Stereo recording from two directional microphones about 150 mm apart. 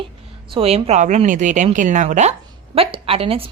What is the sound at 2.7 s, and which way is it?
Speech, 40° right (ahead or behind).